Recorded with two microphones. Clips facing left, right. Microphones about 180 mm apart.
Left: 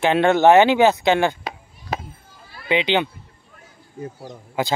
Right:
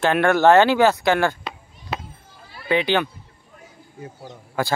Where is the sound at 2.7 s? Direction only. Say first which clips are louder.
Even; 20° left (ahead or behind).